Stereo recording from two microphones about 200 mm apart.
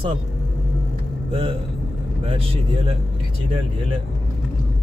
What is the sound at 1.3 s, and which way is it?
Speech, 25° right (ahead or behind).